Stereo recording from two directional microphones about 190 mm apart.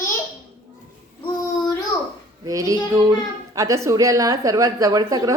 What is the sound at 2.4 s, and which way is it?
A child's voice, 15° right (ahead or behind).